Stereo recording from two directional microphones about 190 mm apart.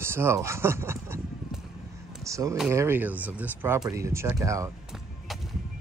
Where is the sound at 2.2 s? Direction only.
15° right (ahead or behind).